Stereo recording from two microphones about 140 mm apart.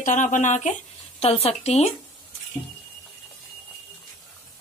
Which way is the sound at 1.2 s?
45° left (ahead or behind).